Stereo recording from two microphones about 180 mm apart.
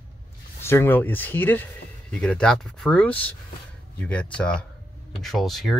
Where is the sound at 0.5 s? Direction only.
15° left (ahead or behind).